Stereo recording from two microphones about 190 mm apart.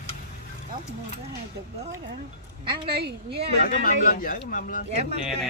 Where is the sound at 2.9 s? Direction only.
55° right (ahead or behind).